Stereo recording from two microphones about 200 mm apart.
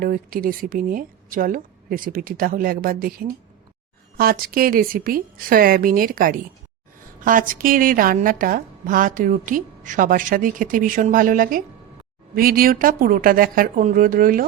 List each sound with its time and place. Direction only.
0.0 s a woman's voice: 45° right (ahead or behind)